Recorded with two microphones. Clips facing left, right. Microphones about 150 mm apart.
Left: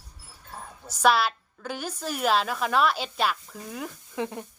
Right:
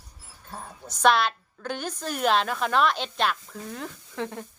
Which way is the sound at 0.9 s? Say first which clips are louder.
Right 1 dB; 5° left (ahead or behind).